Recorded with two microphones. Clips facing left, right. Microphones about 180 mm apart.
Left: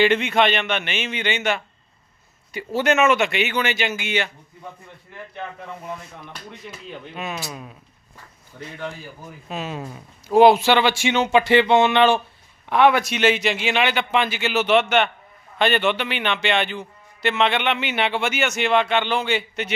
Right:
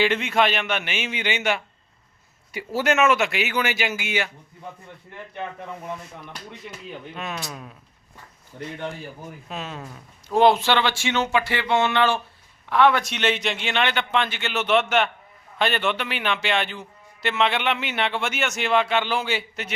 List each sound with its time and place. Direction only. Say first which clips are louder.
0.0 s a man's voice: left 3 dB; centre (ahead or behind)
7.1 s speech: left 3 dB; 5° left (ahead or behind)
8.5 s speech: right 3 dB; 25° right (ahead or behind)
9.5 s speech: left 5 dB; 5° left (ahead or behind)